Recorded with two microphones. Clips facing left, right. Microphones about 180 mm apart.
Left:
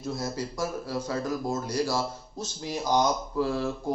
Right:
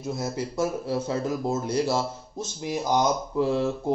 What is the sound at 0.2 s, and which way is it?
Speech, 20° right (ahead or behind).